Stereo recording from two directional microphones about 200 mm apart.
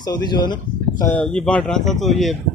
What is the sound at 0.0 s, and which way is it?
Speech, 20° left (ahead or behind).